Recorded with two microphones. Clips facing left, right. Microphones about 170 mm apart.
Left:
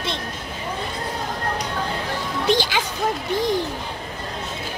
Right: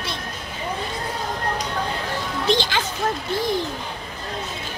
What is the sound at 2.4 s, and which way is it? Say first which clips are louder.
Music: left 1 dB; 10° left (ahead or behind).